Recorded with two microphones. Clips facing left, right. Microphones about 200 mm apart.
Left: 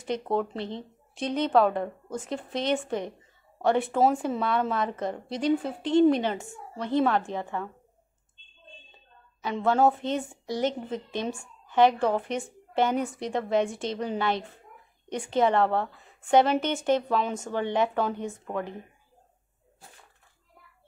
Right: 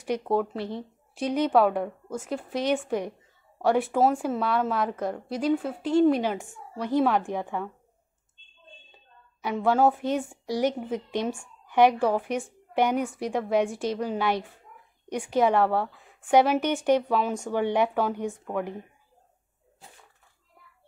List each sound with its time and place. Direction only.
0.0 s a woman's voice: 10° right (ahead or behind)
9.4 s a woman's voice: 10° right (ahead or behind)